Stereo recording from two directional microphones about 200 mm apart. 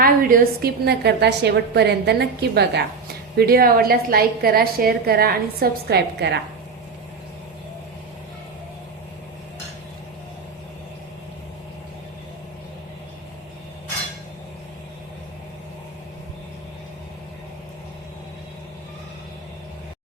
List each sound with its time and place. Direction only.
0.0 s a woman's voice: 45° right (ahead or behind)